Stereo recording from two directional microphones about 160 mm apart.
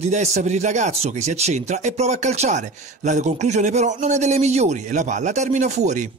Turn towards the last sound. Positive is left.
turn(degrees=-45)  # may be behind; listen again after turning